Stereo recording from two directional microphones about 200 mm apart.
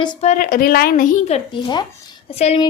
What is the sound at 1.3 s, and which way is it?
A woman's voice, 20° left (ahead or behind).